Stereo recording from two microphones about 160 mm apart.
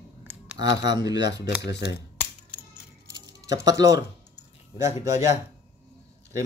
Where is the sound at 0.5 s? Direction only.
90° left.